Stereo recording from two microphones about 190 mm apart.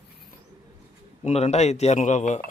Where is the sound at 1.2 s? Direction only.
35° left (ahead or behind).